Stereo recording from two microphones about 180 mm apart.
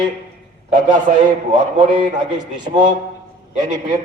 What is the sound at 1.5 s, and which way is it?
A man's voice, 25° right (ahead or behind).